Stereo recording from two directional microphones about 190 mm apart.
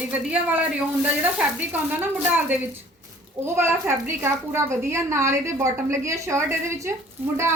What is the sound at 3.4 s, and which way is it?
A woman's voice, 15° right (ahead or behind).